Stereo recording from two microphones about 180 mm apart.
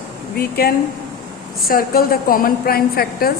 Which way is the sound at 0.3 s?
55° left (ahead or behind).